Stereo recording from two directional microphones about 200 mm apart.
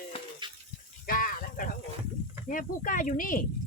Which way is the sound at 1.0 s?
45° left (ahead or behind).